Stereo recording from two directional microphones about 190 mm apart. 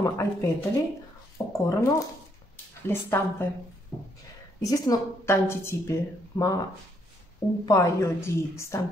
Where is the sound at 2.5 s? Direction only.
10° left (ahead or behind).